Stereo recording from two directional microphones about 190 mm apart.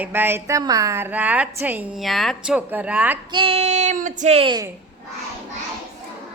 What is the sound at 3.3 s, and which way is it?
Speech, 30° right (ahead or behind).